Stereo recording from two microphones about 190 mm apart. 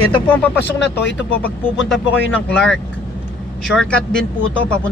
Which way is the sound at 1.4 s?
Centre (ahead or behind).